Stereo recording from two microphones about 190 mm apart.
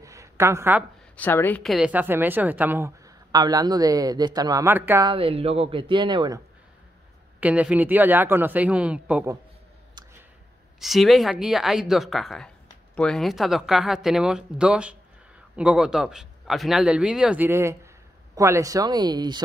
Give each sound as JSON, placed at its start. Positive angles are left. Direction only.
{"t": 0.0, "sound": "a sound", "side_deg": -15}
{"t": 1.1, "sound": "a woman's voice", "side_deg": 10}
{"t": 5.0, "sound": "speech", "side_deg": -30}
{"t": 7.3, "sound": "a woman's voice", "side_deg": -10}
{"t": 10.8, "sound": "speech", "side_deg": 0}